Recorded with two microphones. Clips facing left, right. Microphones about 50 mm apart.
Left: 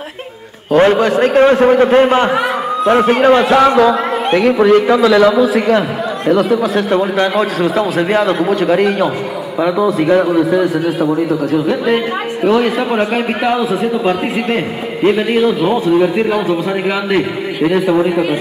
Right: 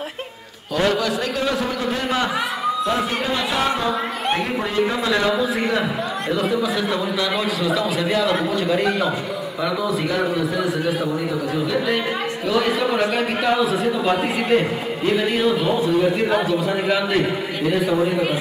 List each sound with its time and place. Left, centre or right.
0.7 s a man's voice: left
9.8 s a man's voice: left
12.4 s a man's voice: left